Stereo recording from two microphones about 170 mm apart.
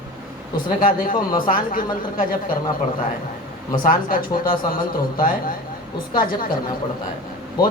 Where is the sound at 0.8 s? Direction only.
55° left (ahead or behind).